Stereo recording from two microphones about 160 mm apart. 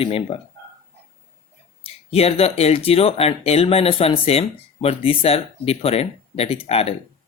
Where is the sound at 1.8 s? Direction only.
40° left (ahead or behind).